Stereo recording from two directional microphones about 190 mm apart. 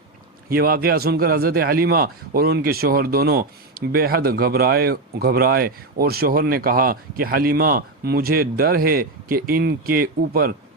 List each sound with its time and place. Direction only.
0.4 s a man's voice: 50° right (ahead or behind)